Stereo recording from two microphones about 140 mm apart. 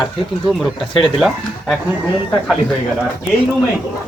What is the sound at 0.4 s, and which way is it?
A man's voice, centre (ahead or behind).